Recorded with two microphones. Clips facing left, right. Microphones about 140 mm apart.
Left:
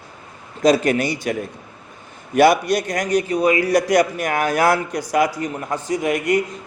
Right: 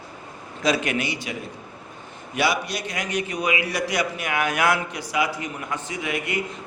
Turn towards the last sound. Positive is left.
turn(degrees=45)  # may be behind; listen again after turning